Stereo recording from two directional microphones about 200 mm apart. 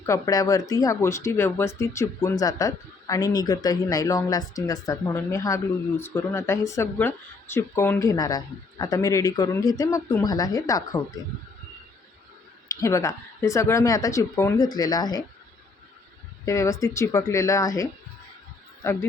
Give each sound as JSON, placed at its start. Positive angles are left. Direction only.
{"t": 0.0, "sound": "speech", "side_deg": 15}
{"t": 12.6, "sound": "speech", "side_deg": 15}
{"t": 16.5, "sound": "speech", "side_deg": 15}